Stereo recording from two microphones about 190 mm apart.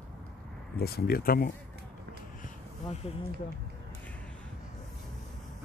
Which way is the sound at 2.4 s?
35° left (ahead or behind).